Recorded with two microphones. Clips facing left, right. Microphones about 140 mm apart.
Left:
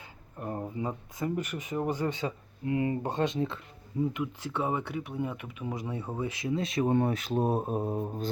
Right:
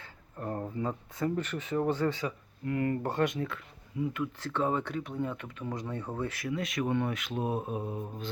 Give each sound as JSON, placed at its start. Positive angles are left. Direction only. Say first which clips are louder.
{"t": 0.0, "sound": "speech", "louder": "even", "side_deg": 15}
{"t": 6.5, "sound": "speech", "louder": "left 5 dB", "side_deg": 30}